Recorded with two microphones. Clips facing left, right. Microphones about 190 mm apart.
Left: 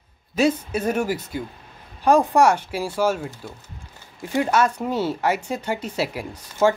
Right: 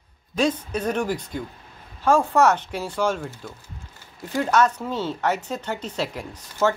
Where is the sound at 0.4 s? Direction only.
10° left (ahead or behind).